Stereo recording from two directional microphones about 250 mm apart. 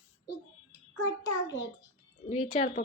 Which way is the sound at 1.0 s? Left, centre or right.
Centre.